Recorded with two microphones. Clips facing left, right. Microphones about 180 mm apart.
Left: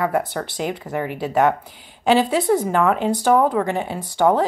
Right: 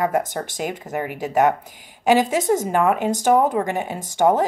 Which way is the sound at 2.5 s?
15° right (ahead or behind).